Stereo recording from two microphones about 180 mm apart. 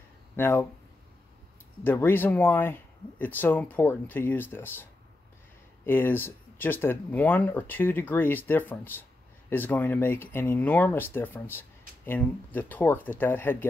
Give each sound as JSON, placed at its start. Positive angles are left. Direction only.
{"t": 0.4, "sound": "speech", "side_deg": 10}
{"t": 1.8, "sound": "speech", "side_deg": 10}
{"t": 5.9, "sound": "speech", "side_deg": 10}